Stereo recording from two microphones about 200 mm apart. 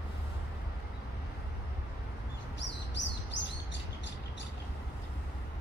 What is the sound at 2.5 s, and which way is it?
Chirp, 60° left (ahead or behind).